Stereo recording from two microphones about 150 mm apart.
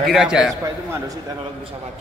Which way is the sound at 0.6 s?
20° right (ahead or behind).